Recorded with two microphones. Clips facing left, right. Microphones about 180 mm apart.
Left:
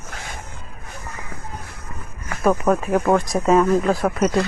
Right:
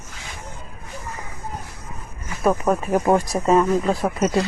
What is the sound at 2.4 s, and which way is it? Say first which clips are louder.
Speech: left 1 dB; centre (ahead or behind).